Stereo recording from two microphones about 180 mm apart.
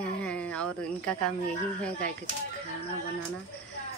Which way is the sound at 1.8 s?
5° left (ahead or behind).